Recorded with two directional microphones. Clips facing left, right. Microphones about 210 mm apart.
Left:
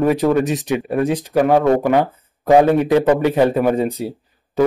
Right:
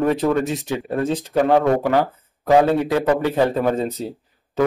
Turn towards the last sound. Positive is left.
turn(degrees=15)  # may be behind; listen again after turning